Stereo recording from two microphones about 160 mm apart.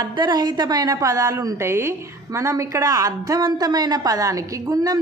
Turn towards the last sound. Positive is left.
turn(degrees=-25)  # may be behind; listen again after turning